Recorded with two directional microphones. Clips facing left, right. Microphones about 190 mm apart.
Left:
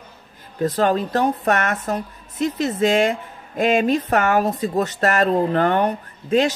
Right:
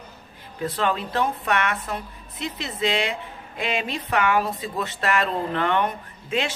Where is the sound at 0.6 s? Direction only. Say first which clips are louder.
Left 6 dB; 40° left (ahead or behind).